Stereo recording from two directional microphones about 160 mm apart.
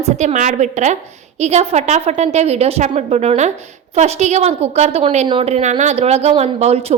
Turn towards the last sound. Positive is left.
turn(degrees=-40)  # may be behind; listen again after turning